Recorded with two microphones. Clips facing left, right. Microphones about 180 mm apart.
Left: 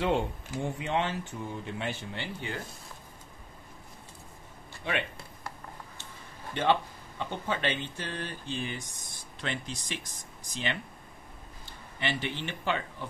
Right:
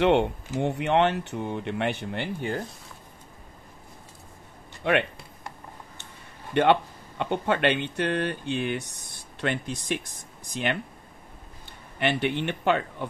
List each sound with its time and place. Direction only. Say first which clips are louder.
0.0 s speech: right 7 dB; 75° right (ahead or behind); by 2.6 s 50° right (ahead or behind)
4.8 s speech: right 9 dB; 65° right (ahead or behind)
6.5 s speech: right 6 dB; 65° right (ahead or behind)
9.4 s speech: right 7 dB; 60° right (ahead or behind)